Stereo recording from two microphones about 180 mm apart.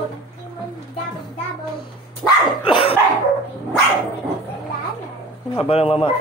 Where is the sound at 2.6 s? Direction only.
30° left (ahead or behind).